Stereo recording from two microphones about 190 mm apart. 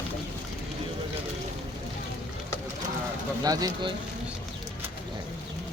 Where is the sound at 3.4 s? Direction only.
20° right (ahead or behind).